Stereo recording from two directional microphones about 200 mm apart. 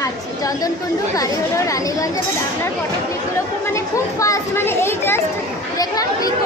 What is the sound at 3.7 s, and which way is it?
Speech, 15° left (ahead or behind).